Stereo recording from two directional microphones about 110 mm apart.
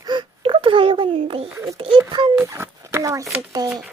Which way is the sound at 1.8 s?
55° right (ahead or behind).